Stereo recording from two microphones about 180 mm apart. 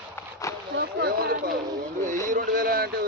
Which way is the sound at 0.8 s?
60° right (ahead or behind).